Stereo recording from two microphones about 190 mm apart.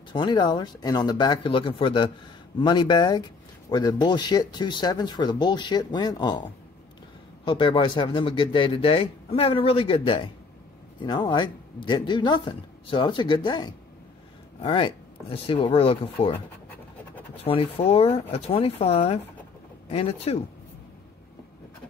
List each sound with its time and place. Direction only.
0.1 s speech: 25° left (ahead or behind)
7.4 s speech: 25° left (ahead or behind)
17.4 s speech: 30° left (ahead or behind)